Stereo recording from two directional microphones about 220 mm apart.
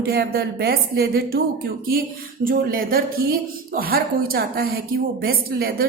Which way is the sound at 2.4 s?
40° right (ahead or behind).